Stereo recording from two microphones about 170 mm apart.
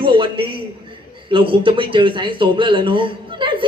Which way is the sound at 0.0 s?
30° right (ahead or behind).